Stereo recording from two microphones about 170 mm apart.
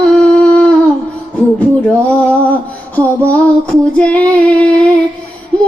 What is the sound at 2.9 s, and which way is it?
Female singing, 10° left (ahead or behind).